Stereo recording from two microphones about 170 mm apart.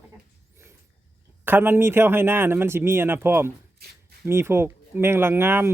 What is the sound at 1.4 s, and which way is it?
Speech, 10° right (ahead or behind).